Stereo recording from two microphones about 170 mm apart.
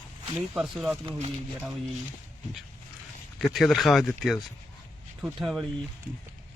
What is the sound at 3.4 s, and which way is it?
Speech, centre (ahead or behind).